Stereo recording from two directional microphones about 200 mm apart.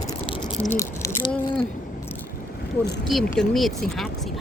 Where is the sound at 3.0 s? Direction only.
Centre (ahead or behind).